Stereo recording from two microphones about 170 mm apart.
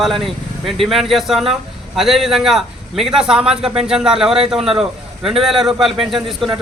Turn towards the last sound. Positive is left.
turn(degrees=0)  # may be behind; listen again after turning